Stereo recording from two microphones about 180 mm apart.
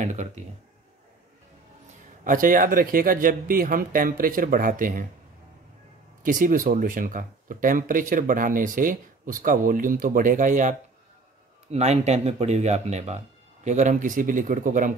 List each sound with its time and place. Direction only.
0.0 s speech: 40° right (ahead or behind)
2.2 s speech: 50° right (ahead or behind)
6.2 s speech: 50° right (ahead or behind)